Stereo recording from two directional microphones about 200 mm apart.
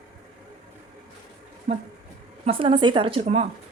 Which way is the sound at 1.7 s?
30° right (ahead or behind).